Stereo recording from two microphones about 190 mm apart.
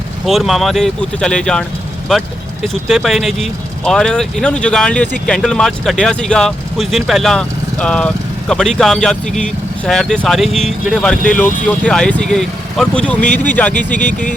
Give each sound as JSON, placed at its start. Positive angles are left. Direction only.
{"t": 0.3, "sound": "speech", "side_deg": 0}
{"t": 2.8, "sound": "speech", "side_deg": 0}
{"t": 14.1, "sound": "speech", "side_deg": 45}